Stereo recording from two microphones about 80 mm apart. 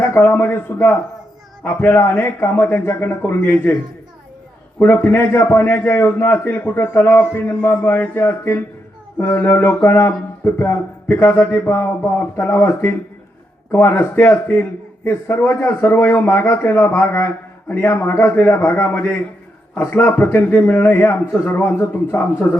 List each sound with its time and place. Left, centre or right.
0.0 s a man's voice: left
4.8 s a man's voice: left